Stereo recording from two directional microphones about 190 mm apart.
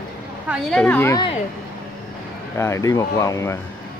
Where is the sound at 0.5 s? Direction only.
5° left (ahead or behind).